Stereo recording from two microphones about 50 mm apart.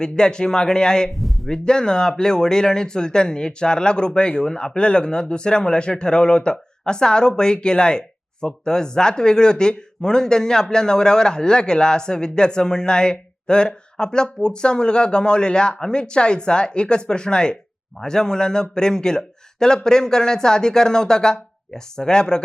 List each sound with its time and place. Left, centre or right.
0.0 s speech: centre